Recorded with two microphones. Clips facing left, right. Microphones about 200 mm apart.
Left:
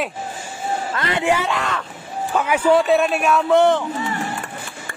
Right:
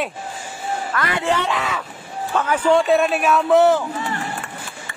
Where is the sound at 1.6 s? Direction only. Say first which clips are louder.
Even; 5° right (ahead or behind).